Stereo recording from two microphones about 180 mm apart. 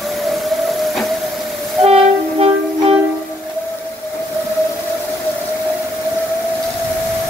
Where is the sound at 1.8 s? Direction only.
35° right (ahead or behind).